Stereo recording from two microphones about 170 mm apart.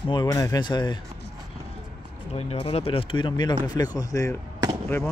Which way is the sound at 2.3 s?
35° left (ahead or behind).